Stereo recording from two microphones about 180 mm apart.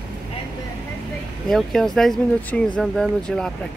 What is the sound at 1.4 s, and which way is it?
Speech, centre (ahead or behind).